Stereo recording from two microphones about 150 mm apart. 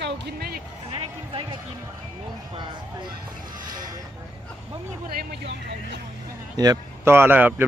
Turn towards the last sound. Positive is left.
turn(degrees=-10)  # may be behind; listen again after turning